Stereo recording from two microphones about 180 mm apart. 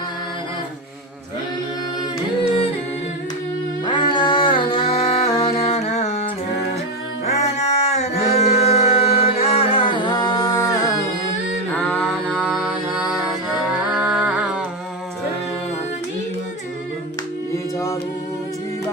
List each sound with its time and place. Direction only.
3.8 s music: 25° left (ahead or behind)
5.3 s a sound: 30° left (ahead or behind)
7.3 s singing: 40° left (ahead or behind); by 10.9 s 20° left (ahead or behind)
11.9 s music: 5° left (ahead or behind)